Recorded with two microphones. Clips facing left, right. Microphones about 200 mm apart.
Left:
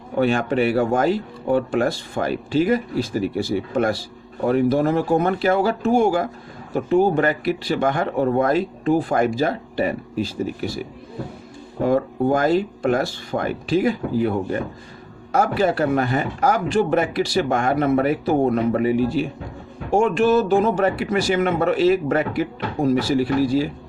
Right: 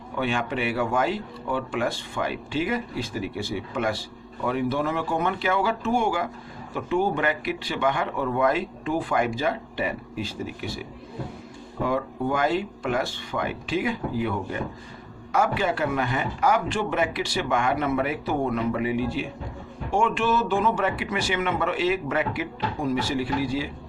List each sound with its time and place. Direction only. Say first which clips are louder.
0.2 s a man's voice: left 8 dB; 40° left (ahead or behind)
11.8 s a man's voice: left 7 dB; 40° left (ahead or behind)